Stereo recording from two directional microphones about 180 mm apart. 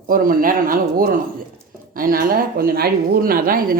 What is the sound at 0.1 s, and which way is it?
Speech, 50° right (ahead or behind).